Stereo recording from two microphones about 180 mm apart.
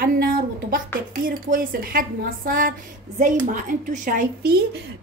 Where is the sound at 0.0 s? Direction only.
50° right (ahead or behind).